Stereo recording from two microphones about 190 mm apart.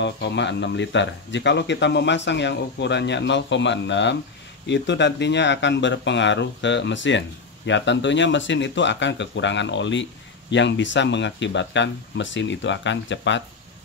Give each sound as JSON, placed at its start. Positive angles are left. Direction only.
{"t": 0.0, "sound": "speech", "side_deg": 65}